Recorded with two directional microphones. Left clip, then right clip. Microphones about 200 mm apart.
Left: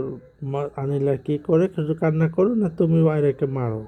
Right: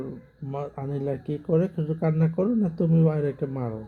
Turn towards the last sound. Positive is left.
turn(degrees=45)  # may be behind; listen again after turning